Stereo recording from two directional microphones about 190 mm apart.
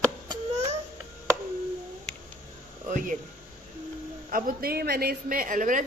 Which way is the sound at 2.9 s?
45° right (ahead or behind).